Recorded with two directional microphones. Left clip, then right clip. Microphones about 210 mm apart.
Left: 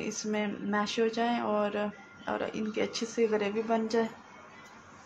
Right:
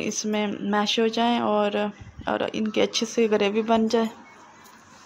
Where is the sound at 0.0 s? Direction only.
35° right (ahead or behind).